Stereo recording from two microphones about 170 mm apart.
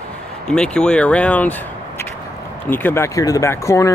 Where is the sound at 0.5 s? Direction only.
5° left (ahead or behind).